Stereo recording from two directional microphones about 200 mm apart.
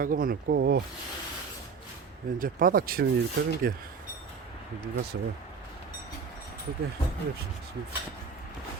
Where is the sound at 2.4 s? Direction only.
45° right (ahead or behind).